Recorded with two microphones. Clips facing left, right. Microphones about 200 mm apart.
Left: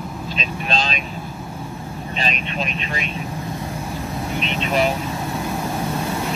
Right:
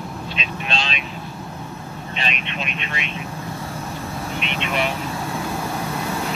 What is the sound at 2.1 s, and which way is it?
Speech, 40° left (ahead or behind).